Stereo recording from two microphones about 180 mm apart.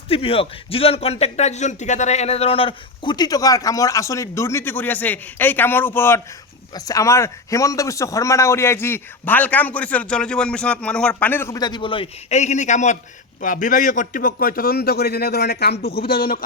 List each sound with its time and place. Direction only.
0.1 s a man's voice: 30° left (ahead or behind); by 16.4 s 55° left (ahead or behind)